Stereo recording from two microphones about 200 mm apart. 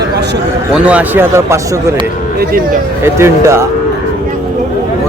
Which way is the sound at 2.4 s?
45° right (ahead or behind).